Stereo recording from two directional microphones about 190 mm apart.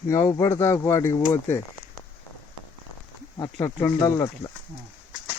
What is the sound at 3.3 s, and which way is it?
Speech, 20° left (ahead or behind).